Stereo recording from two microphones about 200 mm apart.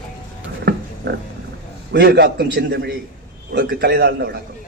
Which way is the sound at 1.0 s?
60° right (ahead or behind).